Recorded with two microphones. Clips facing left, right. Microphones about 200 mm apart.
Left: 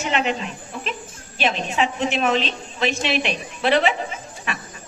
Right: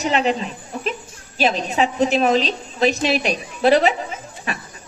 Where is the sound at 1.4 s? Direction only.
40° right (ahead or behind).